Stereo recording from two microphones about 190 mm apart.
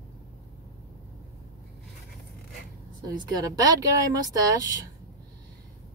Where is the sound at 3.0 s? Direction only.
20° right (ahead or behind).